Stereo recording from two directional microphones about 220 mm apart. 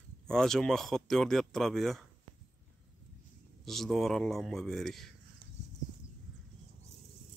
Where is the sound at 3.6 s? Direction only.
Centre (ahead or behind).